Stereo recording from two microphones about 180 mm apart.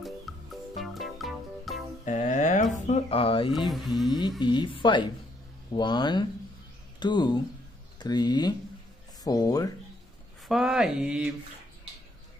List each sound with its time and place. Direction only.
0.0 s music: centre (ahead or behind)
2.0 s music: 45° left (ahead or behind)
3.5 s speech: centre (ahead or behind)
4.4 s speech: 25° left (ahead or behind)
10.5 s speech: 5° right (ahead or behind)